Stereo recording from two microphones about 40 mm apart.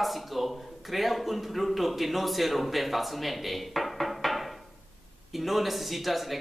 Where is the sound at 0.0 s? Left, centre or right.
Centre.